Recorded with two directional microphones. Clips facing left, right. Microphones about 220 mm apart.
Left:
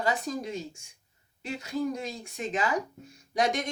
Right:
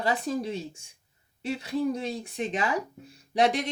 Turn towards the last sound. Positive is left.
turn(degrees=-35)  # may be behind; listen again after turning